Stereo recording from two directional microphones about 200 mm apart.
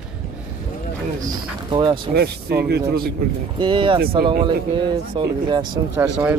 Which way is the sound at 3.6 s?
25° right (ahead or behind).